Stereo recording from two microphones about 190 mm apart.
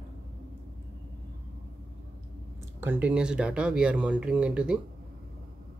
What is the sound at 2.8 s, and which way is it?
Speech, 10° right (ahead or behind).